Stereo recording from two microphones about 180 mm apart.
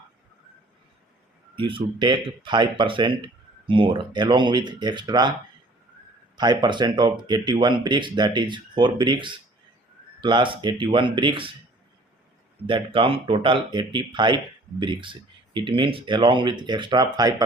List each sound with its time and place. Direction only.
1.5 s speech: 30° right (ahead or behind)
6.3 s speech: 25° right (ahead or behind)
12.6 s speech: 30° right (ahead or behind)